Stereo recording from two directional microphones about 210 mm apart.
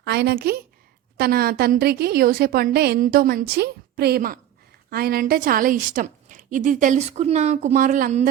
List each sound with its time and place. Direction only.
0.0 s a woman's voice: 50° right (ahead or behind)